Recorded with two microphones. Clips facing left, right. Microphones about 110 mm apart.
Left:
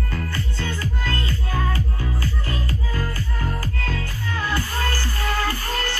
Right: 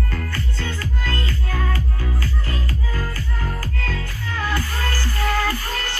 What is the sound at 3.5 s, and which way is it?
Music, 25° left (ahead or behind).